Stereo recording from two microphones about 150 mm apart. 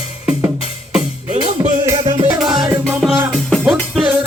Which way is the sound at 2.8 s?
5° right (ahead or behind).